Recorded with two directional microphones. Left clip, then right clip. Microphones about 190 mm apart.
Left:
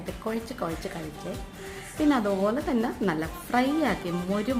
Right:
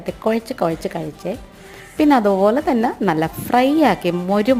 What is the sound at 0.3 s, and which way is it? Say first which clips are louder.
A woman's voice: right 13 dB; 35° right (ahead or behind).